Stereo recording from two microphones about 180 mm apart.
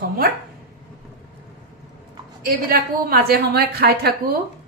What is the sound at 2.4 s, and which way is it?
Speech, 55° right (ahead or behind).